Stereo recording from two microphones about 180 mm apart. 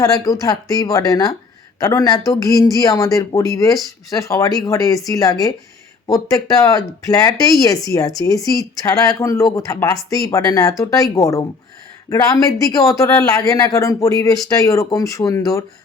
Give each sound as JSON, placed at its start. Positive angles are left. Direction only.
{"t": 0.0, "sound": "speech", "side_deg": 20}